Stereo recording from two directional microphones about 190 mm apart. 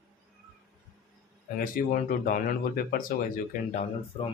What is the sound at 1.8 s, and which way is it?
Speech, 50° left (ahead or behind).